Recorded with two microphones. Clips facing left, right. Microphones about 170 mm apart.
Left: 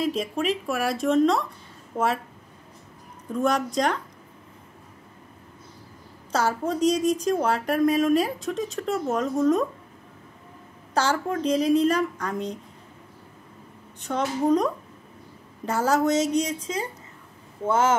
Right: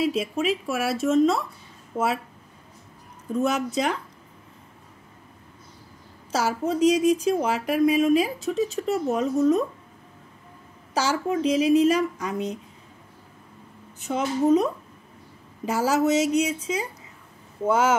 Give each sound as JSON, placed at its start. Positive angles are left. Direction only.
{"t": 0.0, "sound": "speech", "side_deg": -5}
{"t": 3.3, "sound": "speech", "side_deg": -5}
{"t": 6.3, "sound": "speech", "side_deg": -5}
{"t": 11.0, "sound": "speech", "side_deg": -5}
{"t": 13.9, "sound": "speech", "side_deg": -5}
{"t": 17.6, "sound": "speech", "side_deg": -10}